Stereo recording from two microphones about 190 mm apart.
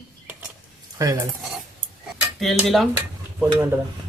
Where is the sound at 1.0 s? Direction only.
15° right (ahead or behind).